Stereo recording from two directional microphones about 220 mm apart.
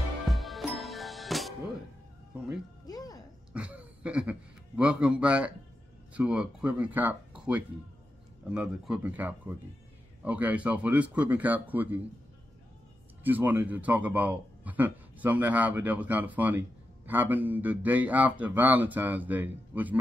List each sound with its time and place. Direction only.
0.2 s music: centre (ahead or behind)
2.9 s music: 15° left (ahead or behind)
3.5 s a sound: 5° right (ahead or behind)
6.1 s a man's voice: 5° right (ahead or behind)
13.2 s a man's voice: 10° right (ahead or behind)